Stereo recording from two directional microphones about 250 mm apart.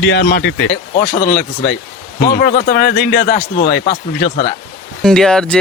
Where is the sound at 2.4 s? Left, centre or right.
Left.